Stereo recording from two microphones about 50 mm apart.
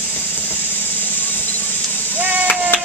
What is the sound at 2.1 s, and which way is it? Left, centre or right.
Chop, right.